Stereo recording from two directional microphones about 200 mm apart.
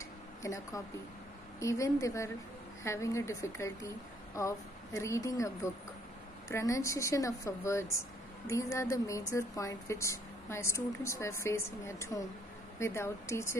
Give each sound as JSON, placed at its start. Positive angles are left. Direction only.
{"t": 0.4, "sound": "a woman's voice", "side_deg": 15}